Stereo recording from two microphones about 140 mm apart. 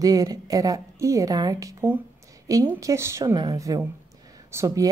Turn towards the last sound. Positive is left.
turn(degrees=-25)  # may be behind; listen again after turning